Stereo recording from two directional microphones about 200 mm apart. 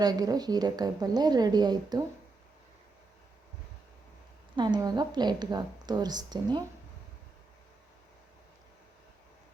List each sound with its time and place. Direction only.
0.0 s a woman's voice: 20° right (ahead or behind)
4.5 s a woman's voice: 20° right (ahead or behind)